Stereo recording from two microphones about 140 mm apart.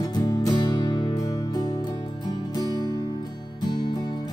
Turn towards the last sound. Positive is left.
turn(degrees=30)  # may be behind; listen again after turning